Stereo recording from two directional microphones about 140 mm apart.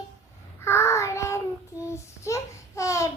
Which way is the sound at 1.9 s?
20° left (ahead or behind).